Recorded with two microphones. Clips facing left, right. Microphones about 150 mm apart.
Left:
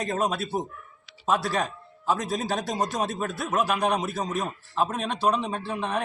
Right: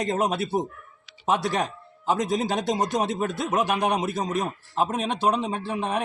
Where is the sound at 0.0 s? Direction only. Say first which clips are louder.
Right 2 dB; 20° right (ahead or behind).